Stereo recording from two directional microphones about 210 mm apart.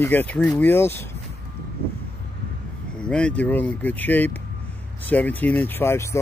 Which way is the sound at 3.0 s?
5° left (ahead or behind).